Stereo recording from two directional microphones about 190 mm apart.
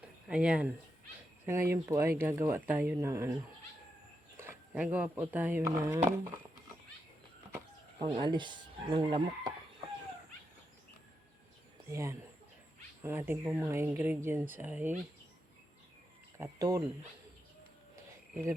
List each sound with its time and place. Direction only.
0.3 s speech: 5° right (ahead or behind)
4.4 s speech: 10° right (ahead or behind)
7.9 s speech: 25° right (ahead or behind)
11.9 s speech: 15° right (ahead or behind)
16.4 s speech: 15° right (ahead or behind)